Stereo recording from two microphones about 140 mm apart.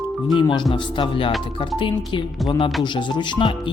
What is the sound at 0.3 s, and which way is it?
Speech, 35° left (ahead or behind).